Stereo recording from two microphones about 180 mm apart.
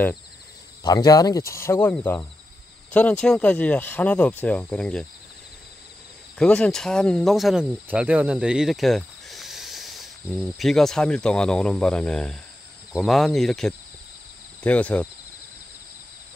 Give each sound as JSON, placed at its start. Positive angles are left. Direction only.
{"t": 0.8, "sound": "speech", "side_deg": 20}
{"t": 6.3, "sound": "cricket", "side_deg": 5}
{"t": 14.6, "sound": "speech", "side_deg": 5}